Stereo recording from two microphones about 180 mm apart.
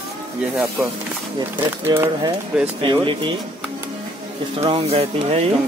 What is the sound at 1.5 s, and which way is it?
Speech, 10° right (ahead or behind).